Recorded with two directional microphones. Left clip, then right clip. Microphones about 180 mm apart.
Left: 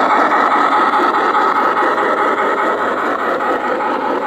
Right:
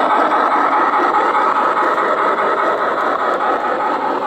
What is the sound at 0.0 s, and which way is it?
Vehicle, 45° left (ahead or behind).